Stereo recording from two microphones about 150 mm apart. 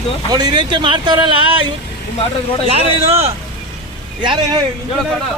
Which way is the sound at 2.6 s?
45° right (ahead or behind).